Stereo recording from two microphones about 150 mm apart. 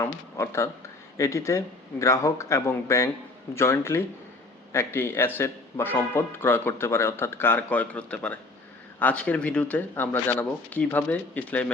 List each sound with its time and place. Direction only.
0.0 s a man's voice: 20° left (ahead or behind)